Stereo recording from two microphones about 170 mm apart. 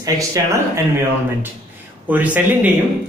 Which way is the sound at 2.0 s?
10° right (ahead or behind).